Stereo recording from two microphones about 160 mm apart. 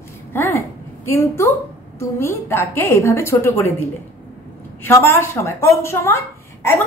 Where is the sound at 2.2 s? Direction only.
15° left (ahead or behind).